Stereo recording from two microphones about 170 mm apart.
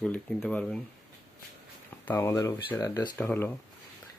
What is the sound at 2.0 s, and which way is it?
Speech, 15° left (ahead or behind).